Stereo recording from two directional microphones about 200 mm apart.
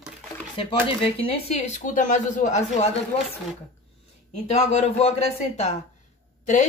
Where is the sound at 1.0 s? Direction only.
30° left (ahead or behind).